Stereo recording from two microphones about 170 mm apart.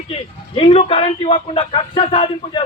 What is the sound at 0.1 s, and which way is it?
A man's voice, 35° left (ahead or behind).